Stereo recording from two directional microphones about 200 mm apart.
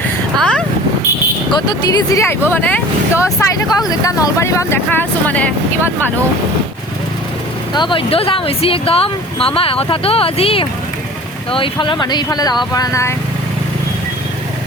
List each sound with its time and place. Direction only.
0.3 s vehicle: 5° left (ahead or behind)
1.5 s speech: 20° left (ahead or behind)
7.7 s speech: 25° left (ahead or behind)